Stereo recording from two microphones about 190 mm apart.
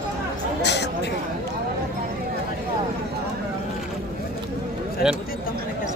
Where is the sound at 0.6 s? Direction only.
60° left (ahead or behind).